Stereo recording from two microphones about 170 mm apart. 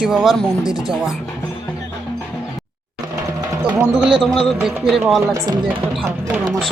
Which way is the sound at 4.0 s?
Centre (ahead or behind).